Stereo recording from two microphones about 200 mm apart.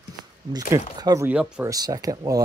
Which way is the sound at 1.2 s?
5° right (ahead or behind).